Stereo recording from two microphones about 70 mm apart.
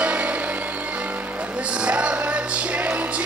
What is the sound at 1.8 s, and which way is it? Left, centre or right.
Music, centre.